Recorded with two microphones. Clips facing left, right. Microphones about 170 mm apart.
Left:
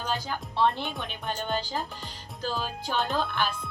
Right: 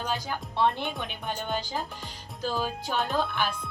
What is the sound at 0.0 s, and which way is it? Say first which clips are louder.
Speech: even; 15° right (ahead or behind).